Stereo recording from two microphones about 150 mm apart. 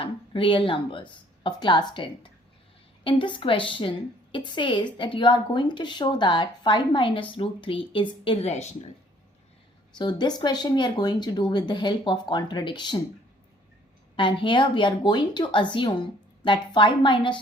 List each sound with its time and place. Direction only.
0.0 s a woman's voice: 35° left (ahead or behind)
10.0 s speech: 30° left (ahead or behind)
14.2 s a woman's voice: 35° left (ahead or behind)